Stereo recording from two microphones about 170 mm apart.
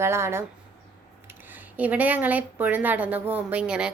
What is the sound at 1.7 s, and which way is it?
A woman's voice, 10° right (ahead or behind).